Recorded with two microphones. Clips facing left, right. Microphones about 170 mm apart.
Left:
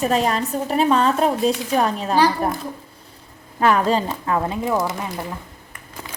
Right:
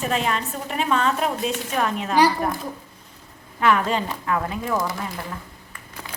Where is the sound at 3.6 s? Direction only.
35° left (ahead or behind); by 4.9 s 20° left (ahead or behind).